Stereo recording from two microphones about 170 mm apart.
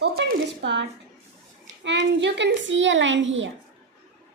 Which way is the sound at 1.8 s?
90° right.